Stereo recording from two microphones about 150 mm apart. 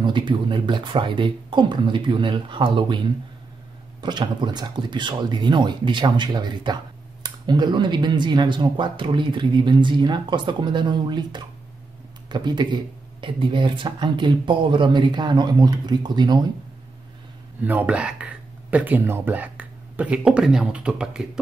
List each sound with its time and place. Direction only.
0.0 s speech: 30° right (ahead or behind)
17.6 s speech: 10° right (ahead or behind)